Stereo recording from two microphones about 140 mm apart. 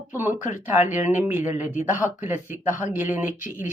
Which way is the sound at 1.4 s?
60° left (ahead or behind).